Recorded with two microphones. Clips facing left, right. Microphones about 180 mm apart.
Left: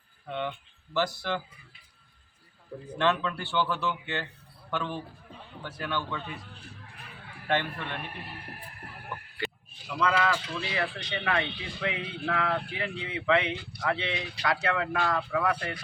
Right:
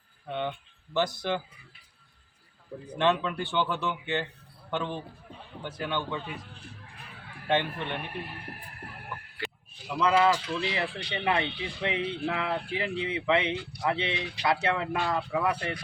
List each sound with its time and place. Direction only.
0.3 s speech: 20° right (ahead or behind)
3.0 s speech: 15° right (ahead or behind)
7.4 s speech: 20° right (ahead or behind)
10.0 s speech: 25° right (ahead or behind)